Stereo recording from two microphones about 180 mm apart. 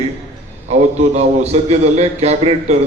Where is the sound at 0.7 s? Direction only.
40° right (ahead or behind).